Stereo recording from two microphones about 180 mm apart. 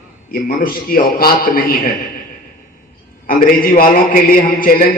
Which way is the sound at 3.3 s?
55° left (ahead or behind).